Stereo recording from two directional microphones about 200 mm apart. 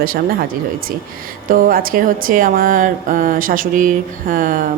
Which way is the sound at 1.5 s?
45° right (ahead or behind).